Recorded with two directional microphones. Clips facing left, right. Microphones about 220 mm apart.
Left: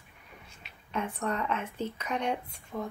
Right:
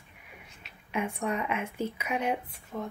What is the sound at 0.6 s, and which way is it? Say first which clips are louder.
Speech: right 2 dB; 10° right (ahead or behind).